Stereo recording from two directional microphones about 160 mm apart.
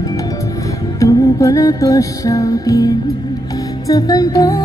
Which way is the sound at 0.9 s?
20° left (ahead or behind).